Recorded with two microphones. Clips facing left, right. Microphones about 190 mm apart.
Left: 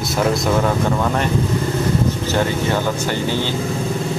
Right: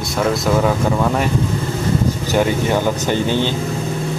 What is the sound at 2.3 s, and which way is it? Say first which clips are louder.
Speech: right 5 dB; 15° right (ahead or behind).